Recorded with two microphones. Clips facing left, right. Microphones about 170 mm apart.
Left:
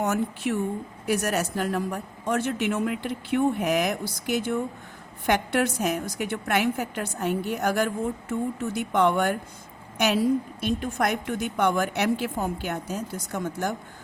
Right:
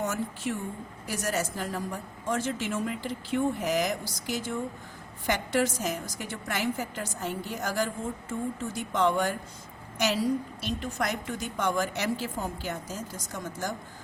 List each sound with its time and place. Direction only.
0.0 s a woman's voice: 65° left (ahead or behind)